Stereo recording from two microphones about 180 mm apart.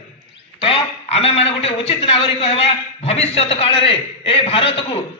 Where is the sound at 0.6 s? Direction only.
30° left (ahead or behind).